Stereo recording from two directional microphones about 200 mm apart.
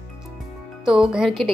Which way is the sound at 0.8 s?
5° right (ahead or behind).